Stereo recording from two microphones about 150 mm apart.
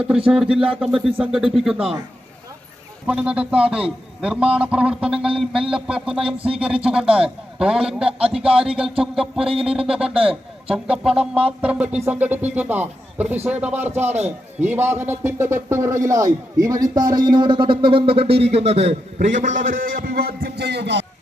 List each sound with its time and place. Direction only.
0.3 s a man's voice: 5° right (ahead or behind)
3.1 s a man's voice: 10° right (ahead or behind)
9.5 s music: 40° right (ahead or behind)
9.7 s speech: 5° right (ahead or behind); by 20.7 s 85° right